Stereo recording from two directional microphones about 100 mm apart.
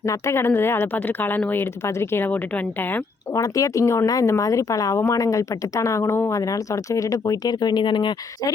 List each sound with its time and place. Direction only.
0.0 s speech: 30° left (ahead or behind)
3.3 s speech: 35° left (ahead or behind); by 8.1 s 50° left (ahead or behind)